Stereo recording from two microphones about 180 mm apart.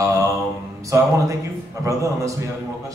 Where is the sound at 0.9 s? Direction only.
15° right (ahead or behind).